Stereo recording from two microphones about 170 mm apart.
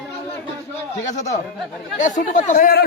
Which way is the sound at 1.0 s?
45° left (ahead or behind).